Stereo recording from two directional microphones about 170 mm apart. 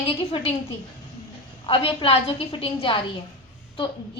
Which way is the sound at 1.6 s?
35° left (ahead or behind).